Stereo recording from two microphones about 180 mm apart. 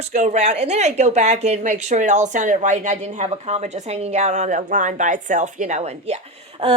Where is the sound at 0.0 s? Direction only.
40° right (ahead or behind).